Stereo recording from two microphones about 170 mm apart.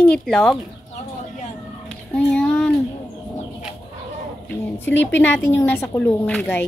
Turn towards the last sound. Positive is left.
turn(degrees=10)  # may be behind; listen again after turning